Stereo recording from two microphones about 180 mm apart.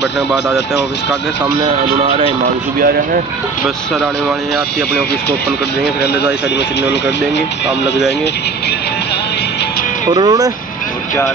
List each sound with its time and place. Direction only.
2.0 s speech: 30° right (ahead or behind)
10.0 s speech: 25° right (ahead or behind)